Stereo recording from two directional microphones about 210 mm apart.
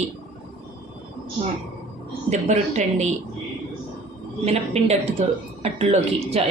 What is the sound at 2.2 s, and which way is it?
Speech, 35° right (ahead or behind).